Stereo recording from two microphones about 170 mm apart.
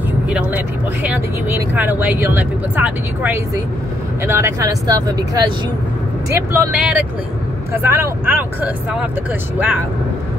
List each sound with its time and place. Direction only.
1.0 s speech: 10° right (ahead or behind)
6.5 s speech: 10° right (ahead or behind)